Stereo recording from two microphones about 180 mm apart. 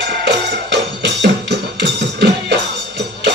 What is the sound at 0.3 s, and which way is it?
Music, 75° right (ahead or behind).